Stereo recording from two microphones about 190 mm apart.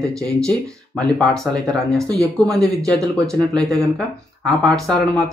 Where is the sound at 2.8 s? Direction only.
15° right (ahead or behind).